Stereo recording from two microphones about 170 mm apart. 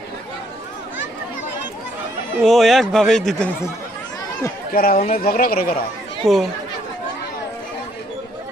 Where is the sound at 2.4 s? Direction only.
Centre (ahead or behind).